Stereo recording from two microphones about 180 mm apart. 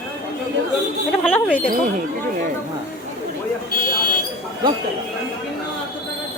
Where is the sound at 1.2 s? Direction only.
5° left (ahead or behind).